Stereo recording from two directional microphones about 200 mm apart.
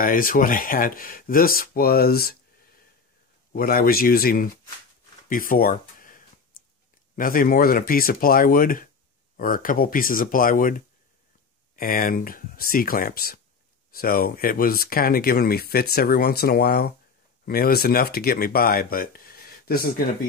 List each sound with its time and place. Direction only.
0.0 s speech: 45° left (ahead or behind)
3.5 s speech: 45° left (ahead or behind)